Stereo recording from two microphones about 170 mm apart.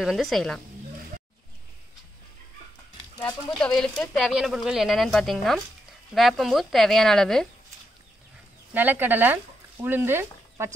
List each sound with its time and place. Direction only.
0.0 s speech: centre (ahead or behind)
3.2 s speech: 25° left (ahead or behind)
3.5 s speech: 5° left (ahead or behind)
8.7 s speech: 10° right (ahead or behind)